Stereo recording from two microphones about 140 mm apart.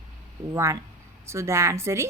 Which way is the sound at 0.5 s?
20° right (ahead or behind).